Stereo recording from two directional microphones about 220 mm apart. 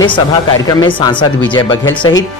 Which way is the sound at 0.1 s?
20° left (ahead or behind).